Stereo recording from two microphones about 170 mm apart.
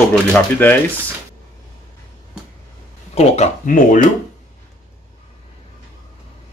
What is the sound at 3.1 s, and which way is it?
Speech, 40° left (ahead or behind).